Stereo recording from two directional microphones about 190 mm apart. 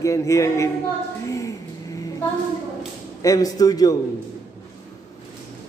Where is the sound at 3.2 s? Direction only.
20° left (ahead or behind).